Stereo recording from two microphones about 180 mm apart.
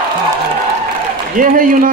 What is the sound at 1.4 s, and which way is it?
Speech, 45° right (ahead or behind).